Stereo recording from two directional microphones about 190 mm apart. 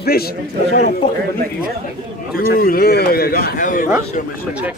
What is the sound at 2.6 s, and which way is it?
A man's voice, 50° left (ahead or behind).